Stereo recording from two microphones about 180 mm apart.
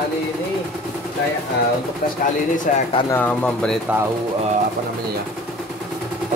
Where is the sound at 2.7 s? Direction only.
45° left (ahead or behind).